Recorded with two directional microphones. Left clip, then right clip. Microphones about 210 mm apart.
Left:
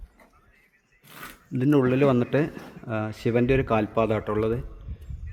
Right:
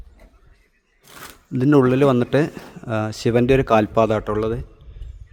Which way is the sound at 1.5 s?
25° right (ahead or behind).